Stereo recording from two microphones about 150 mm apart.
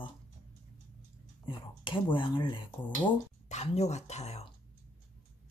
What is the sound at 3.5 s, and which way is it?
Speech, 50° left (ahead or behind).